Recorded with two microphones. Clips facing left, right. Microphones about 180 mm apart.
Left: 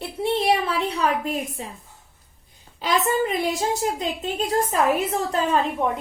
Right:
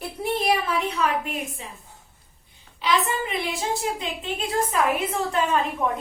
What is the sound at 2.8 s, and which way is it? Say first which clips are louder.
A child's voice: left 3 dB; 40° left (ahead or behind).